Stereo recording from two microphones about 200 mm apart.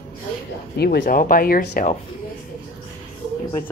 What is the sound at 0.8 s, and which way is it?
Speech, 55° left (ahead or behind).